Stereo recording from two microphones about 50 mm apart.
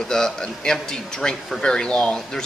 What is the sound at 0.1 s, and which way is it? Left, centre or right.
Speech, centre.